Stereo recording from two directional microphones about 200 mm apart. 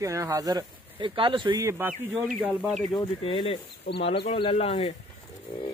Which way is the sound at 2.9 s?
25° left (ahead or behind).